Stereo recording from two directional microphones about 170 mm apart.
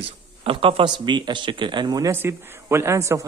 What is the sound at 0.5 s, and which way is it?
Speech, 30° right (ahead or behind).